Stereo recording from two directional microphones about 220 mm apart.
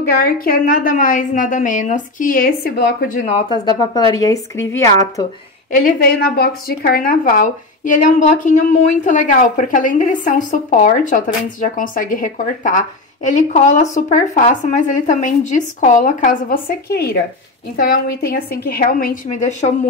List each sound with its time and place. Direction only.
0.2 s a woman's voice: 40° left (ahead or behind)
3.3 s speech: 25° left (ahead or behind)
5.9 s a woman's voice: 45° left (ahead or behind)